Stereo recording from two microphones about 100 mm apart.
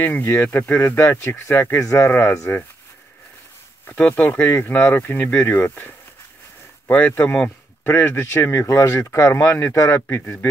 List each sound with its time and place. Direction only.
0.0 s speech: 20° left (ahead or behind)
3.8 s speech: 20° left (ahead or behind)